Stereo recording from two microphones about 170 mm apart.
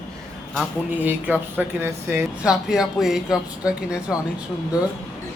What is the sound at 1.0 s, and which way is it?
Speech, 10° right (ahead or behind).